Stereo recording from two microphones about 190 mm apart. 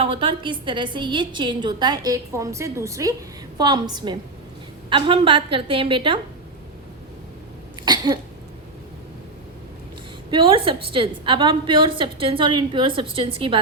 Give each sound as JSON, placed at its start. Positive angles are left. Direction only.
{"t": 0.0, "sound": "a woman's voice", "side_deg": -30}
{"t": 7.9, "sound": "cough", "side_deg": -20}
{"t": 10.3, "sound": "a woman's voice", "side_deg": -25}